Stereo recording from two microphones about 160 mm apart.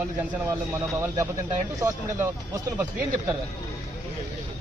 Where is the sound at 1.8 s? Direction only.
20° right (ahead or behind).